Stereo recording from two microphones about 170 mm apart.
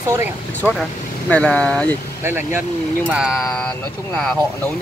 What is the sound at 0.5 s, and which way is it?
Speech, 10° left (ahead or behind).